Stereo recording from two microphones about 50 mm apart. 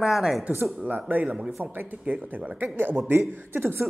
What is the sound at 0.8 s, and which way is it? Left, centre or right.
Speech, right.